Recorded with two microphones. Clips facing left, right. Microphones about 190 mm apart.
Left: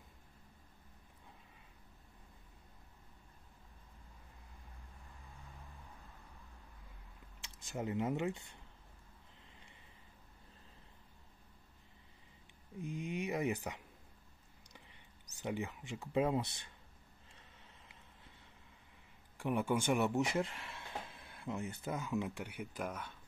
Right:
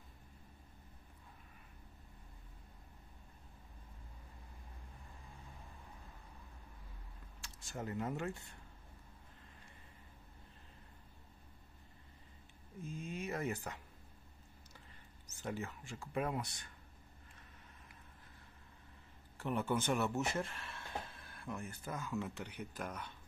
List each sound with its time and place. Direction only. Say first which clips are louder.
7.4 s speech: left 4 dB; 20° left (ahead or behind)
12.7 s a sound: left 4 dB; 15° left (ahead or behind)
15.2 s speech: left 3 dB; 15° left (ahead or behind)
19.3 s speech: left 2 dB; 15° left (ahead or behind)